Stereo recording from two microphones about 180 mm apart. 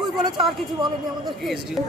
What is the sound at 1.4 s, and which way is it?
Speech, centre (ahead or behind).